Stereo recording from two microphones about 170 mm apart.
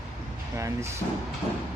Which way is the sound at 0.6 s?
15° right (ahead or behind).